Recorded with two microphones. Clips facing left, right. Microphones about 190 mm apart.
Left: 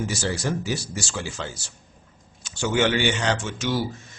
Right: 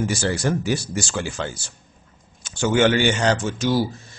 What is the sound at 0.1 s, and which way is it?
Speech, 55° right (ahead or behind).